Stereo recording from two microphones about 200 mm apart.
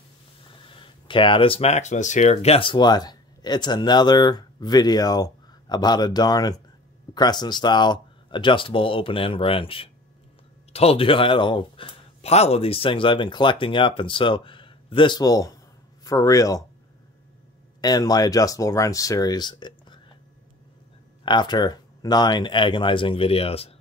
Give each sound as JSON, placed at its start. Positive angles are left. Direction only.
{"t": 0.6, "sound": "speech", "side_deg": 25}
{"t": 17.7, "sound": "speech", "side_deg": 20}
{"t": 21.2, "sound": "speech", "side_deg": 25}